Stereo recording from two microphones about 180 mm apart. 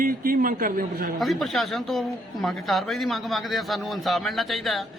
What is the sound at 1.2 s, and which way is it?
A man's voice, centre (ahead or behind).